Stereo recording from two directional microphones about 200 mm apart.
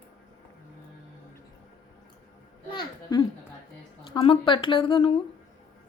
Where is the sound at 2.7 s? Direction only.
20° left (ahead or behind).